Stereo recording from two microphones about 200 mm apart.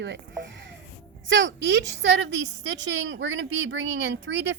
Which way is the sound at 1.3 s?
65° right (ahead or behind).